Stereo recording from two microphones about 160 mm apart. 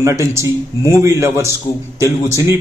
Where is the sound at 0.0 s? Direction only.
15° right (ahead or behind).